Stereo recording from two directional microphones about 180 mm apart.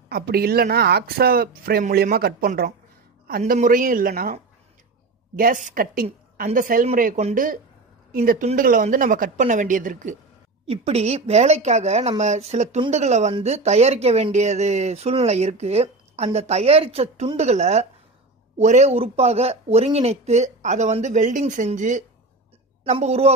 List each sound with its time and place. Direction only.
0.1 s a woman's voice: 60° right (ahead or behind); by 23.3 s 35° right (ahead or behind)